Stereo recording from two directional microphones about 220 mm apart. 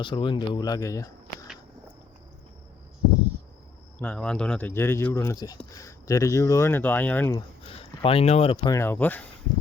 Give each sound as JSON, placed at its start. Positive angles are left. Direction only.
{"t": 0.0, "sound": "speech", "side_deg": 20}
{"t": 3.9, "sound": "speech", "side_deg": 5}
{"t": 7.3, "sound": "speech", "side_deg": 25}